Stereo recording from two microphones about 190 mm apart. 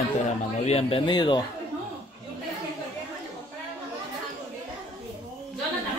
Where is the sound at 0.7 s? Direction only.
30° left (ahead or behind).